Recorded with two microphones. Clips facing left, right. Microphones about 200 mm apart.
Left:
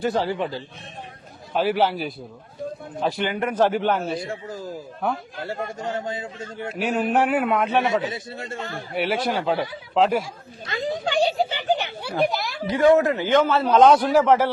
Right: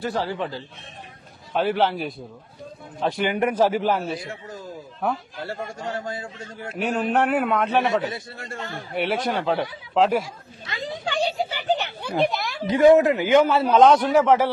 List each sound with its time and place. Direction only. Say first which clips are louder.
0.0 s speech: left 3 dB; 15° left (ahead or behind)
1.5 s speech: left 1 dB; 5° left (ahead or behind)
3.2 s speech: right 2 dB; 10° right (ahead or behind)
5.5 s a man's voice: left 2 dB; 20° left (ahead or behind)
6.7 s speech: left 1 dB; 5° left (ahead or behind)
8.1 s a man's voice: left 2 dB; 25° left (ahead or behind)
8.7 s speech: even; centre (ahead or behind)
11.7 s a sound: left 1 dB; 15° left (ahead or behind)
12.2 s speech: left 1 dB; centre (ahead or behind)
12.6 s a man's voice: right 2 dB; 20° right (ahead or behind)
13.7 s speech: left 1 dB; centre (ahead or behind)